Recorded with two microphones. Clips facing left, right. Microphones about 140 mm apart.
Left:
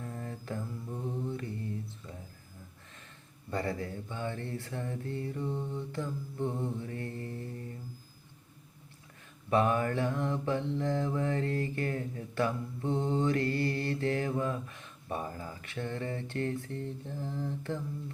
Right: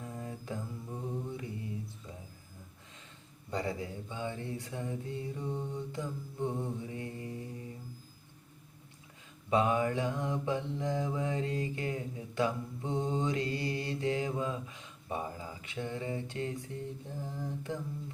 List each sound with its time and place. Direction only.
0.0 s mantra: 15° right (ahead or behind)
3.5 s mantra: 15° right (ahead or behind)
9.5 s mantra: 15° right (ahead or behind)